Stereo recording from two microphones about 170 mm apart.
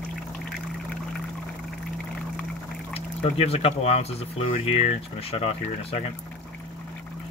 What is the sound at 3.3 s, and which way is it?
Speech, 35° left (ahead or behind).